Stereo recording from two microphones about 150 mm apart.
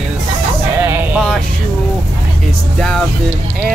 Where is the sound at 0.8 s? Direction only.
15° right (ahead or behind).